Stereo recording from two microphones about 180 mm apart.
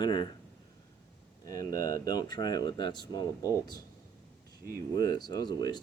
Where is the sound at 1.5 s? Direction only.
20° left (ahead or behind).